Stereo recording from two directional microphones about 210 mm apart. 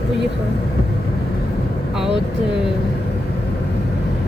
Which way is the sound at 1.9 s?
Centre (ahead or behind).